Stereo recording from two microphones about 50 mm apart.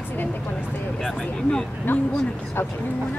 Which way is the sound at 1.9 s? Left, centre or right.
Left.